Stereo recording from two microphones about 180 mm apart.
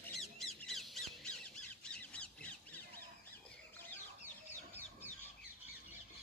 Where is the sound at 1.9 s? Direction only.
5° left (ahead or behind).